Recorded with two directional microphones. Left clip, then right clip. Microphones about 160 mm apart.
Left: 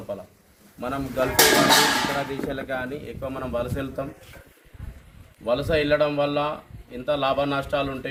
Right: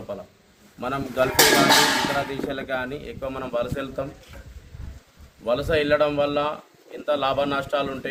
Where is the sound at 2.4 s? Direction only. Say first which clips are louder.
Right 1 dB; 5° right (ahead or behind).